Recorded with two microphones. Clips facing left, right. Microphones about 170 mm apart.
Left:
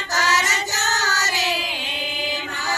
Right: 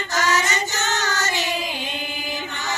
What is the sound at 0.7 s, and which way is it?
Child singing, 40° left (ahead or behind).